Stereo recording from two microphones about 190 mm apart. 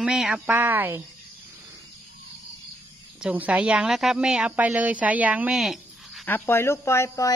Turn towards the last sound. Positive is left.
turn(degrees=15)  # may be behind; listen again after turning